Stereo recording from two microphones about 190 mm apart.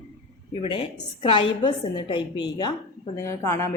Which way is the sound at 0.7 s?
25° left (ahead or behind).